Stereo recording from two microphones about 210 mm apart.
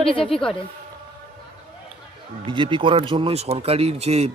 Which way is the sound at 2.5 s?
25° right (ahead or behind).